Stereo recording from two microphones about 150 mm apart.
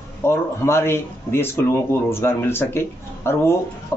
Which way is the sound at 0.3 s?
15° left (ahead or behind).